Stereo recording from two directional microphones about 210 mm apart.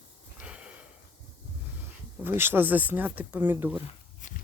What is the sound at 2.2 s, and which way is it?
Speech, 10° right (ahead or behind).